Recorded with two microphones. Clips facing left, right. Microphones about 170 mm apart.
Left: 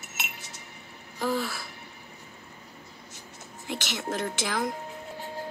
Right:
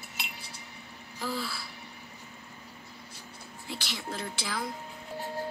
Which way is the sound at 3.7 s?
75° left (ahead or behind).